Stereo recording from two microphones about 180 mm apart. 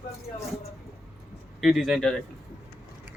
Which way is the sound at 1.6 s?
Centre (ahead or behind).